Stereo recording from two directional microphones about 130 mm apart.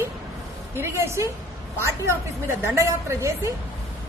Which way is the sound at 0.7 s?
20° right (ahead or behind).